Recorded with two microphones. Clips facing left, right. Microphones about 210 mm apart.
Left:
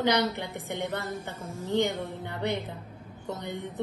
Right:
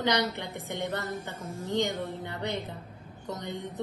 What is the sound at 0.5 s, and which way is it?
Speech, 15° left (ahead or behind).